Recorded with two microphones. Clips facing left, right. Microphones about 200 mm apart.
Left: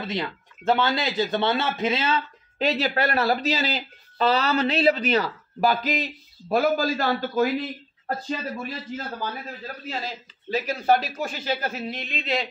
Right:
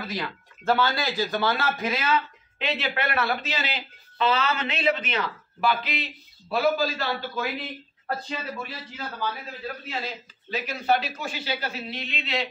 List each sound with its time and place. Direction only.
0.0 s speech: 25° left (ahead or behind)
2.6 s speech: 40° left (ahead or behind)
10.5 s speech: 45° left (ahead or behind)